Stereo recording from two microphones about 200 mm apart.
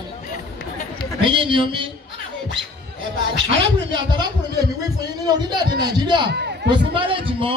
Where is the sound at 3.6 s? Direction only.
25° right (ahead or behind).